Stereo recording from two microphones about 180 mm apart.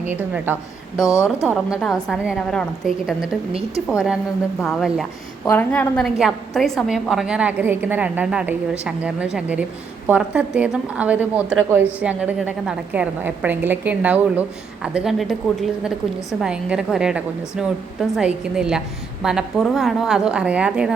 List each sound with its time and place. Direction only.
0.2 s a woman's voice: 10° right (ahead or behind)
0.9 s speech: 20° left (ahead or behind)
1.7 s a woman's voice: centre (ahead or behind)
5.5 s speech: 10° left (ahead or behind)
6.1 s a woman's voice: centre (ahead or behind)